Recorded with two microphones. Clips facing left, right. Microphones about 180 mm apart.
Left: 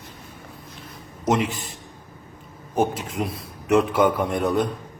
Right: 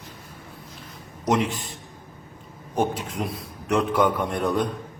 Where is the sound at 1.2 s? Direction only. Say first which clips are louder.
Left 1 dB; centre (ahead or behind).